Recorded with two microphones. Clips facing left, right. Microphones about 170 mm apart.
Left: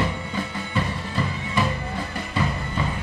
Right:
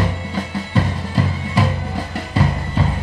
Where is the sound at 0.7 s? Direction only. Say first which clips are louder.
Right 6 dB; 40° right (ahead or behind).